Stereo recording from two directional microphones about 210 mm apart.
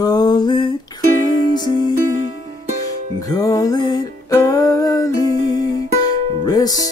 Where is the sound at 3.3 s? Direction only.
15° left (ahead or behind).